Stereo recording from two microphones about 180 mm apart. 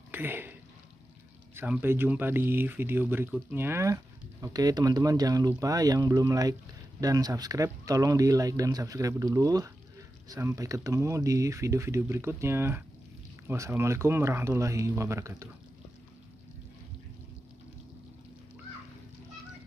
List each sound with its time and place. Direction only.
0.1 s speech: 10° right (ahead or behind)